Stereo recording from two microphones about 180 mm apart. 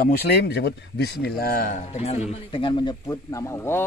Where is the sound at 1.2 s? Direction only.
55° left (ahead or behind); by 2.2 s 40° left (ahead or behind).